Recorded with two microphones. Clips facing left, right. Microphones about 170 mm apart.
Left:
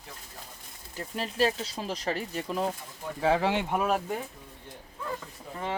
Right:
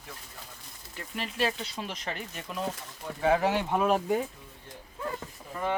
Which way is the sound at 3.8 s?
Centre (ahead or behind).